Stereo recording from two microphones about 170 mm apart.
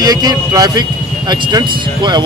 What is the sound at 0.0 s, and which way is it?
Speech, 20° right (ahead or behind).